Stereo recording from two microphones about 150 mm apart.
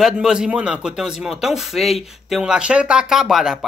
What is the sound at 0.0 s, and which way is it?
Speech, 5° right (ahead or behind).